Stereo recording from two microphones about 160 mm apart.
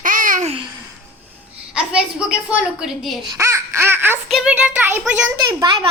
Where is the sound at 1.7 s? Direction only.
5° right (ahead or behind).